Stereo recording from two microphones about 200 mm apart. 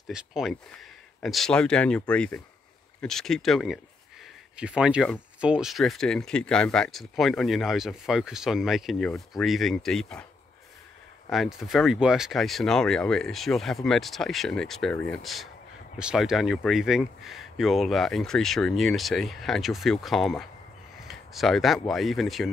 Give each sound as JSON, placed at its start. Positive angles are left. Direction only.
{"t": 0.1, "sound": "speech", "side_deg": -5}
{"t": 11.2, "sound": "speech", "side_deg": 0}